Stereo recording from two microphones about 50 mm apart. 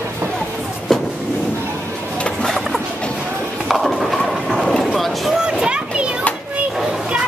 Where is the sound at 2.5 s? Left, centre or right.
Centre.